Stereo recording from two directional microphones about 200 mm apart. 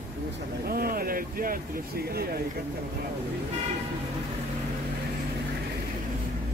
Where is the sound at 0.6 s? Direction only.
50° right (ahead or behind).